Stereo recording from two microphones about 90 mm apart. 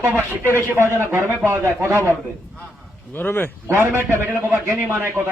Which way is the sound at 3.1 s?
20° left (ahead or behind).